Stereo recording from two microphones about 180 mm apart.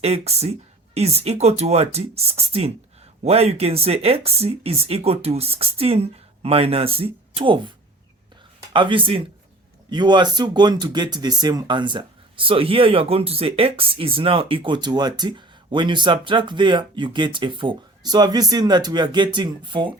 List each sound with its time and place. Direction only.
0.0 s speech: 35° right (ahead or behind)
8.7 s speech: 25° right (ahead or behind)